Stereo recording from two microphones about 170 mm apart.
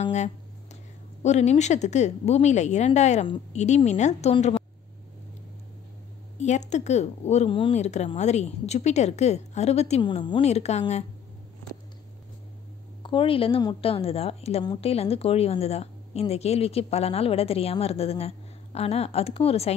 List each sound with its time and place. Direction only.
0.0 s a sound: 40° left (ahead or behind)
1.2 s a woman's voice: 40° left (ahead or behind)
6.4 s a woman's voice: 45° left (ahead or behind)
13.0 s a woman's voice: 30° left (ahead or behind)